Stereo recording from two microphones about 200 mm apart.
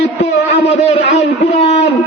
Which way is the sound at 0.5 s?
30° left (ahead or behind).